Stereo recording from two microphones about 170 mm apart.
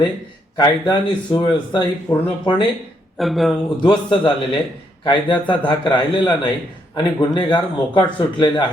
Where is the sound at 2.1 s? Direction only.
10° left (ahead or behind).